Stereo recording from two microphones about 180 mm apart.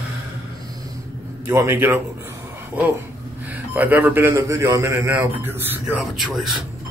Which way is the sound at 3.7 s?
10° right (ahead or behind).